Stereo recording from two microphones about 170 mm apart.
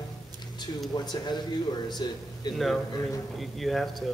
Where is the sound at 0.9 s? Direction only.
25° left (ahead or behind).